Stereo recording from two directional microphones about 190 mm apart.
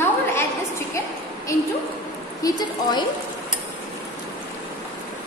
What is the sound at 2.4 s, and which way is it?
Speech, 20° left (ahead or behind).